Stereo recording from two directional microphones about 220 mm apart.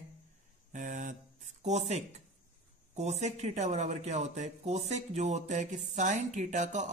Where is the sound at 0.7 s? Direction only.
35° right (ahead or behind).